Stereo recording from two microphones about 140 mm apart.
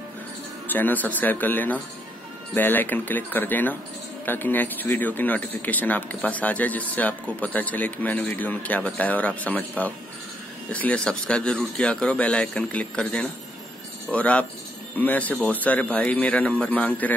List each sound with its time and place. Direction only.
0.7 s speech: 15° left (ahead or behind)